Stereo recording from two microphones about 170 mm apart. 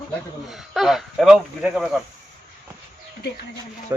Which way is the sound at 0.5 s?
Centre (ahead or behind).